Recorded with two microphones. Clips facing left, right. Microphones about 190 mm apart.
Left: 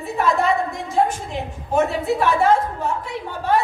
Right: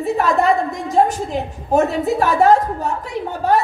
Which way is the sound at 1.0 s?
40° right (ahead or behind).